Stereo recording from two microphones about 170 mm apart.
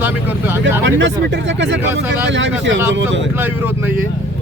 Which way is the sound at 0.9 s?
90° right.